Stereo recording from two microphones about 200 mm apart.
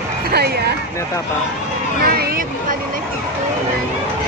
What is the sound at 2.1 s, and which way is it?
Vehicle, 45° right (ahead or behind).